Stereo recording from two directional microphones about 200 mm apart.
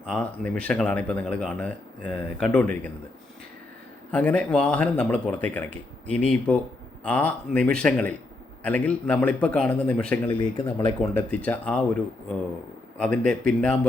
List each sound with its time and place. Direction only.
0.0 s a man's voice: 5° left (ahead or behind)
4.1 s a man's voice: 5° left (ahead or behind)
10.2 s speech: 25° left (ahead or behind)
11.0 s a man's voice: 5° left (ahead or behind)
13.0 s speech: 5° left (ahead or behind)